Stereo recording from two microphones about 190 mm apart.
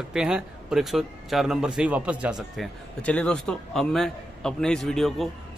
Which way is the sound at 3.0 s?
5° left (ahead or behind).